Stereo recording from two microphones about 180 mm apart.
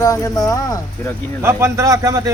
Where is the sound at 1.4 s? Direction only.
15° right (ahead or behind).